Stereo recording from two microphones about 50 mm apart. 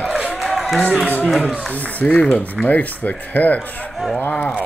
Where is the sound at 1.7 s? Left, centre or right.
Left.